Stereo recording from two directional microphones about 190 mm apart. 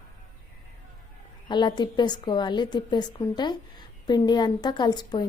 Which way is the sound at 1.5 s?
25° left (ahead or behind).